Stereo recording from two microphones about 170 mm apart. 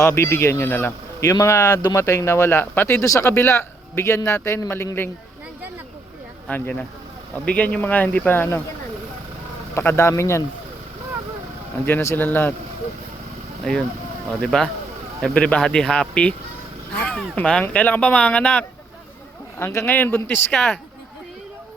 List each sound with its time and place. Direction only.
0.0 s speech: 15° left (ahead or behind)
6.5 s speech: 10° left (ahead or behind)
9.7 s speech: 15° left (ahead or behind)
11.9 s speech: 10° left (ahead or behind)
13.7 s speech: 5° left (ahead or behind)